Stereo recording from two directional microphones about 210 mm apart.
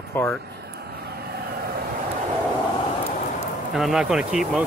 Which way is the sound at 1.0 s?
50° right (ahead or behind).